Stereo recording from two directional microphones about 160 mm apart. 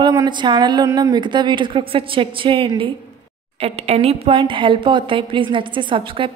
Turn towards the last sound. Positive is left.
turn(degrees=-30)  # may be behind; listen again after turning